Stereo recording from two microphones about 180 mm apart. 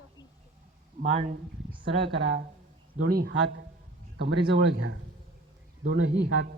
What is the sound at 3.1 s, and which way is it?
Speech, 55° right (ahead or behind).